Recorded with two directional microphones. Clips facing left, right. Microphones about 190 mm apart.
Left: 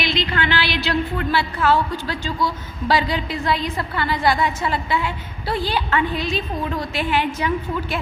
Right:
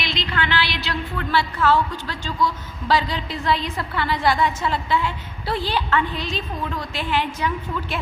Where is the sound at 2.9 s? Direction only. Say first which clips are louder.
Left 1 dB; 10° left (ahead or behind).